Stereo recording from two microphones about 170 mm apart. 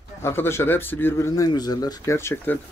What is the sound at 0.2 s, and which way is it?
Speech, 15° left (ahead or behind).